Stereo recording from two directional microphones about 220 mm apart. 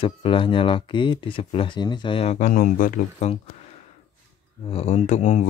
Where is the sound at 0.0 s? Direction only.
25° left (ahead or behind).